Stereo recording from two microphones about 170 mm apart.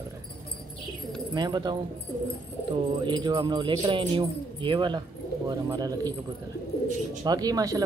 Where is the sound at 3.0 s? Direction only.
25° right (ahead or behind).